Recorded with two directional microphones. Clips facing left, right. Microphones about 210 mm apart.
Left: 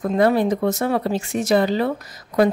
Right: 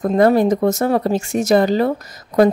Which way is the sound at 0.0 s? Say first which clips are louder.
Right 4 dB; 45° right (ahead or behind).